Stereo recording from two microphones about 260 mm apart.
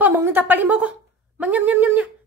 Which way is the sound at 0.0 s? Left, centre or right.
Centre.